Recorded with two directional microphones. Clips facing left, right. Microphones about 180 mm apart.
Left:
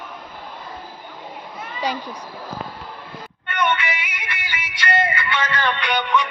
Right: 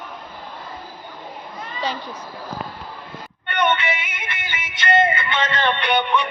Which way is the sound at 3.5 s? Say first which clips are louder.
Right 2 dB; 30° right (ahead or behind).